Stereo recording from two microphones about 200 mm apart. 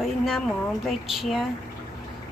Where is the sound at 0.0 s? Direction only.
Centre (ahead or behind).